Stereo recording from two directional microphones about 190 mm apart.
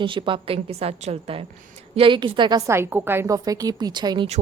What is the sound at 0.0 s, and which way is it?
A woman's voice, 25° right (ahead or behind).